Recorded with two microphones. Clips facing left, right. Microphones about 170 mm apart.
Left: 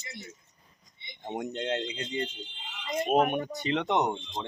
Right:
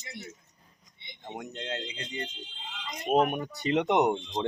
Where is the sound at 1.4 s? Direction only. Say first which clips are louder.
Left 6 dB; 30° left (ahead or behind).